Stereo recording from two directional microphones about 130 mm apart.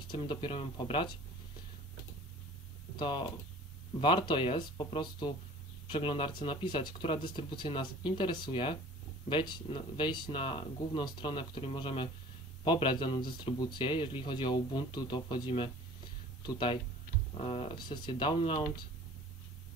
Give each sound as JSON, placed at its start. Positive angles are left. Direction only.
{"t": 0.1, "sound": "speech", "side_deg": 40}
{"t": 3.0, "sound": "speech", "side_deg": 35}